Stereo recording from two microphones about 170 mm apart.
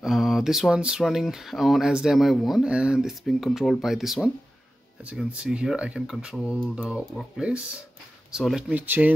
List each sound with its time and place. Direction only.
0.0 s speech: centre (ahead or behind)